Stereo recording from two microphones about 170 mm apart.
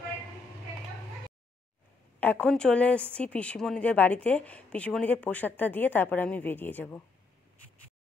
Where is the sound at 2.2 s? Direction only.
10° left (ahead or behind).